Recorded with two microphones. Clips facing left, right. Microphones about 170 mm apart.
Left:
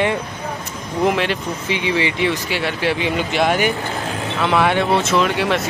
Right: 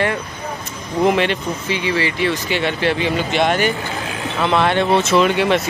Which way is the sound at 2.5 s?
5° left (ahead or behind).